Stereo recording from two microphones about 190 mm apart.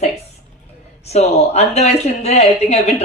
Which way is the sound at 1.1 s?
35° left (ahead or behind).